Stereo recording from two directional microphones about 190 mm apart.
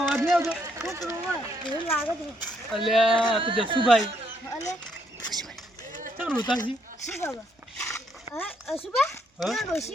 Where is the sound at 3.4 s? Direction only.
25° right (ahead or behind).